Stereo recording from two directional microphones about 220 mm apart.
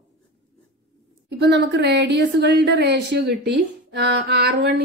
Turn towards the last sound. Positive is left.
turn(degrees=-50)  # may be behind; listen again after turning